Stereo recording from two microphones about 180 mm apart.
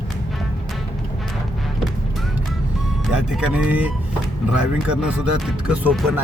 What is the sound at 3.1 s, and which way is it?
Speech, 5° right (ahead or behind).